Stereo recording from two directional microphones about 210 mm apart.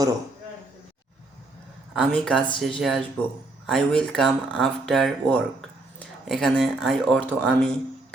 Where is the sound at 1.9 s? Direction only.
5° left (ahead or behind).